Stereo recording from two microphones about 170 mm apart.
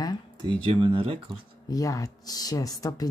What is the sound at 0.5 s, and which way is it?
Speech, 30° right (ahead or behind).